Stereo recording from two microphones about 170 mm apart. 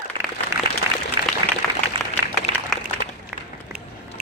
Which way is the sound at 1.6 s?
5° left (ahead or behind).